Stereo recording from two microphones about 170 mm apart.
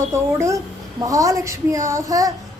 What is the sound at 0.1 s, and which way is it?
A woman's voice, 15° right (ahead or behind).